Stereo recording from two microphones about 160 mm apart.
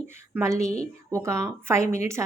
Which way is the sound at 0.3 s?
20° right (ahead or behind).